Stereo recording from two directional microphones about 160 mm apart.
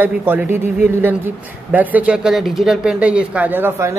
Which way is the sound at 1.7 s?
10° right (ahead or behind).